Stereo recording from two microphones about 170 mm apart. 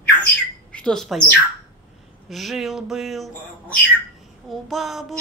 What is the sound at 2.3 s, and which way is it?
Child singing, centre (ahead or behind).